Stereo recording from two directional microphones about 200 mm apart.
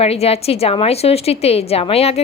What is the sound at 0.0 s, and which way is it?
A woman's voice, 30° left (ahead or behind).